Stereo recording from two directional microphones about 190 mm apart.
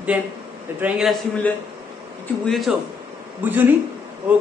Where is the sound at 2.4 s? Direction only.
Centre (ahead or behind).